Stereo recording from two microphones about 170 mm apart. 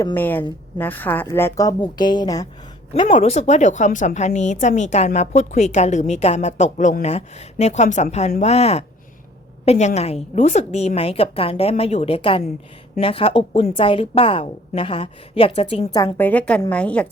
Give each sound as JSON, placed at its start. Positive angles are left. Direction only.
{"t": 0.0, "sound": "a woman's voice", "side_deg": 10}
{"t": 3.1, "sound": "a woman's voice", "side_deg": 40}
{"t": 16.1, "sound": "a woman's voice", "side_deg": 10}